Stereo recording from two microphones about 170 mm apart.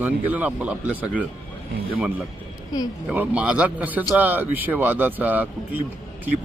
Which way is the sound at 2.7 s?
25° left (ahead or behind).